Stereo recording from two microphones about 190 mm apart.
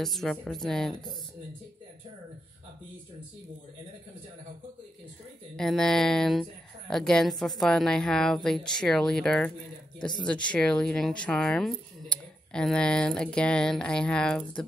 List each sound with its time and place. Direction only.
0.0 s speech: centre (ahead or behind)
5.6 s speech: 5° left (ahead or behind)